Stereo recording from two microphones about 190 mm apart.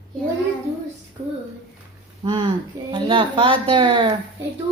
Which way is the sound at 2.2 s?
25° right (ahead or behind).